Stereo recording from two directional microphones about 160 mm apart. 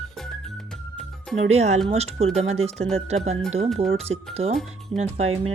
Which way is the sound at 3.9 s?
40° right (ahead or behind).